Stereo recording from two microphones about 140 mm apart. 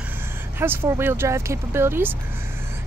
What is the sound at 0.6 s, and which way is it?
Speech, 15° right (ahead or behind).